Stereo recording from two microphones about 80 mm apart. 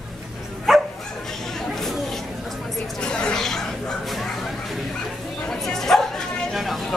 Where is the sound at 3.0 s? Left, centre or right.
Centre.